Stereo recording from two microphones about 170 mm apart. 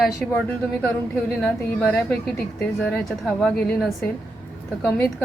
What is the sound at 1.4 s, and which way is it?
A woman's voice, 10° left (ahead or behind).